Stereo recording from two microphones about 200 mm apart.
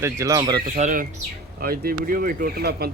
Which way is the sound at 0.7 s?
35° right (ahead or behind).